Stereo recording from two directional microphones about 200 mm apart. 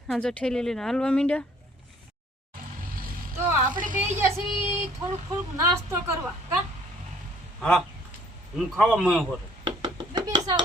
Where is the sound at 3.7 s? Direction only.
40° right (ahead or behind).